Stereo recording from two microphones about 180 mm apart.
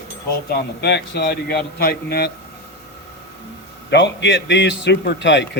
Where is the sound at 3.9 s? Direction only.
75° left (ahead or behind).